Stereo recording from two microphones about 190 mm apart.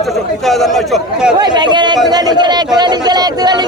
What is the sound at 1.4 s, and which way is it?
A man's voice, 25° right (ahead or behind).